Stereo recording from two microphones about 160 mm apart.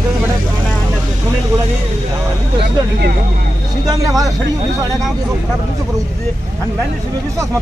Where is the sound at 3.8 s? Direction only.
20° right (ahead or behind).